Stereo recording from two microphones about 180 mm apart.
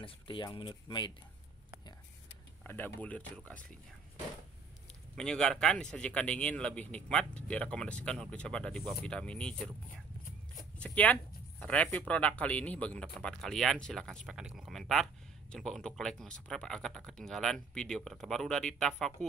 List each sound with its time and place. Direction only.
0.0 s speech: 25° left (ahead or behind)
2.6 s speech: 10° left (ahead or behind)
5.1 s a man's voice: 5° left (ahead or behind)